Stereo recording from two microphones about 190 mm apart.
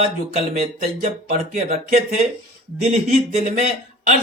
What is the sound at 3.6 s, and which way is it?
Speech, 40° right (ahead or behind).